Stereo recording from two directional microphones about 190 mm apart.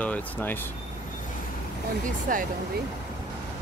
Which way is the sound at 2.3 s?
45° right (ahead or behind).